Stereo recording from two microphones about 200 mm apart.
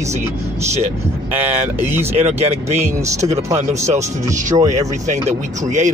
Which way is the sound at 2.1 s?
35° right (ahead or behind).